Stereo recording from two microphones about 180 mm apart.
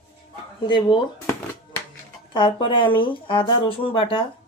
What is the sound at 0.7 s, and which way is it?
Speech, 25° left (ahead or behind).